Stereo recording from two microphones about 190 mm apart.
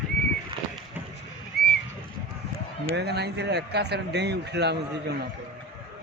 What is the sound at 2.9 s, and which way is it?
Speech, 60° right (ahead or behind).